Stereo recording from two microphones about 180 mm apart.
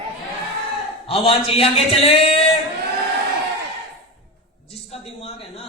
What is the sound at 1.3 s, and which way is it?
Speech, 30° left (ahead or behind).